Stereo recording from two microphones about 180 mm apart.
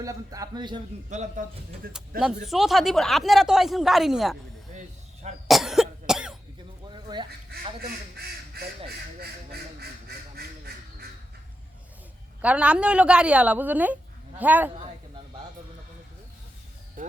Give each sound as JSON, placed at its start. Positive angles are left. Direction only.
{"t": 0.0, "sound": "speech", "side_deg": -20}
{"t": 1.1, "sound": "a man's voice", "side_deg": -40}
{"t": 1.8, "sound": "speech", "side_deg": -55}
{"t": 2.4, "sound": "speech", "side_deg": 0}
{"t": 5.5, "sound": "cough", "side_deg": 0}
{"t": 6.9, "sound": "duck", "side_deg": -25}
{"t": 7.8, "sound": "speech", "side_deg": -60}
{"t": 12.4, "sound": "a woman's voice", "side_deg": -5}
{"t": 17.0, "sound": "music", "side_deg": -50}